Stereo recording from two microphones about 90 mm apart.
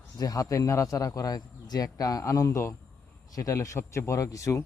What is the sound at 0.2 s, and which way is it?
Speech, 40° left (ahead or behind).